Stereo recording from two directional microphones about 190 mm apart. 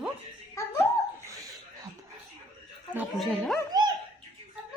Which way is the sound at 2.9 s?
Centre (ahead or behind).